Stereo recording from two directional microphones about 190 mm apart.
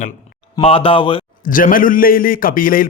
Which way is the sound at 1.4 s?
45° left (ahead or behind).